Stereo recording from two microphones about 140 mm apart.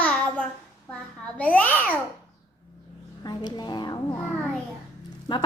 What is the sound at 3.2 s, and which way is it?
Speech, 30° left (ahead or behind).